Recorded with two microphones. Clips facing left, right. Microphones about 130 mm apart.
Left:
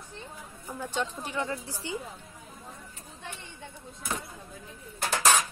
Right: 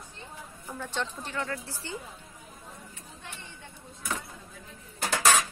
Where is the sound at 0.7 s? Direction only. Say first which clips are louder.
Left 2 dB; 10° left (ahead or behind).